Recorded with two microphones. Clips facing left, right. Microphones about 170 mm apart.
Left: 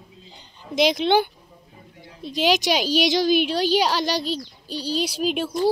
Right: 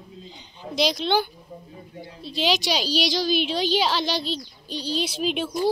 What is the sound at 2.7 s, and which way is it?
Speech, 50° left (ahead or behind).